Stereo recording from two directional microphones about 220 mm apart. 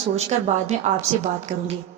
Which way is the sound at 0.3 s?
30° right (ahead or behind).